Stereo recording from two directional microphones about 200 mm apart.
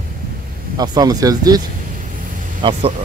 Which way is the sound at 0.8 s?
20° right (ahead or behind).